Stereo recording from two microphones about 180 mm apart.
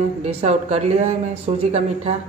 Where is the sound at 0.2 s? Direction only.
35° right (ahead or behind).